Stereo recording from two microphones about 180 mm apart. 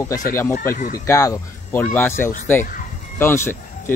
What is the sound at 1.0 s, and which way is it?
Speech, 15° left (ahead or behind).